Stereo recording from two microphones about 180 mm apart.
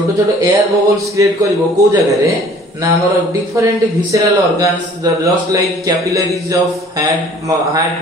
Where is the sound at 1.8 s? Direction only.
20° right (ahead or behind).